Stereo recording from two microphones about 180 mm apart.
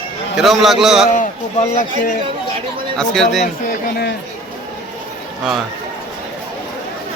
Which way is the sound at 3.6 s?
65° left (ahead or behind).